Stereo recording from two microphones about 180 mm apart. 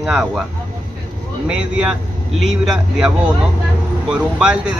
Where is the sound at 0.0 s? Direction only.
5° right (ahead or behind).